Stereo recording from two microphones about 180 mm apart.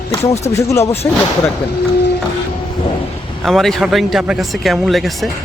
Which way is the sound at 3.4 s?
Centre (ahead or behind).